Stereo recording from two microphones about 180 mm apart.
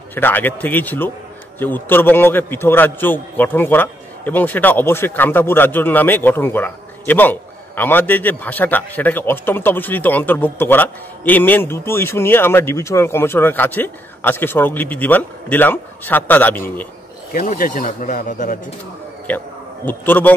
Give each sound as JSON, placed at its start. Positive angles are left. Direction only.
{"t": 0.1, "sound": "a man's voice", "side_deg": 10}
{"t": 17.3, "sound": "speech", "side_deg": 50}
{"t": 19.2, "sound": "a man's voice", "side_deg": 10}